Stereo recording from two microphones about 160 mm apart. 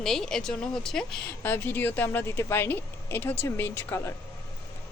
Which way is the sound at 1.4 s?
15° left (ahead or behind).